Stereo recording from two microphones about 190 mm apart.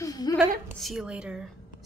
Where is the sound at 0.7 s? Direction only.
Centre (ahead or behind).